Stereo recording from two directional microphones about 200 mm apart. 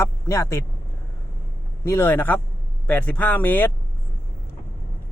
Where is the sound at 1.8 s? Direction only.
10° left (ahead or behind).